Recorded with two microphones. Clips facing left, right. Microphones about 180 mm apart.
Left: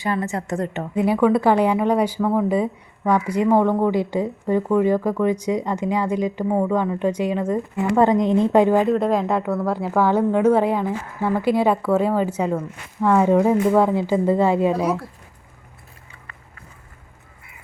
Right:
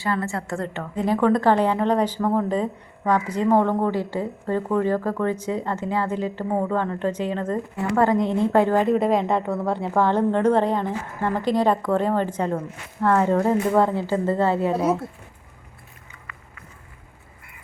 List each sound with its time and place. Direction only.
0.0 s a woman's voice: 15° left (ahead or behind)
6.5 s a woman's voice: 5° left (ahead or behind)
8.8 s a woman's voice: centre (ahead or behind)
14.7 s speech: 25° right (ahead or behind)
16.1 s a sound: 30° left (ahead or behind)